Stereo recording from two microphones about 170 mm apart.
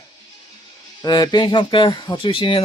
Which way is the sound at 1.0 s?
25° left (ahead or behind).